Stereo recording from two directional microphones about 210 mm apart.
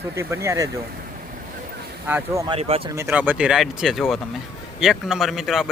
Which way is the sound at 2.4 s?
25° right (ahead or behind).